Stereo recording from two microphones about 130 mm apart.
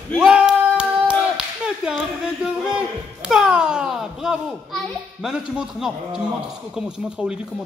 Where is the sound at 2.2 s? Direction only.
5° right (ahead or behind).